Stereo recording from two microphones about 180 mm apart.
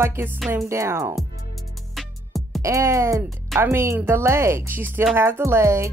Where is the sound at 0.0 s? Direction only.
15° right (ahead or behind).